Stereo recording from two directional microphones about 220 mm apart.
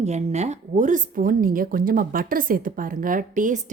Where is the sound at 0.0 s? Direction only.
30° right (ahead or behind).